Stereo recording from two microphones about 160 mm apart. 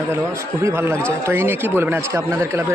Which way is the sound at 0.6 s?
15° right (ahead or behind).